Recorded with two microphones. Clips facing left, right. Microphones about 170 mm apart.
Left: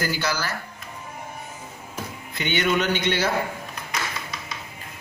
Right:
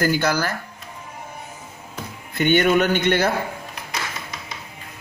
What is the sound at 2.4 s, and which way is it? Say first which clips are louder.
Speech: right 6 dB; 50° right (ahead or behind).